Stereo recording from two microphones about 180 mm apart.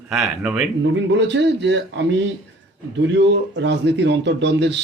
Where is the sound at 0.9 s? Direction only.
75° right (ahead or behind).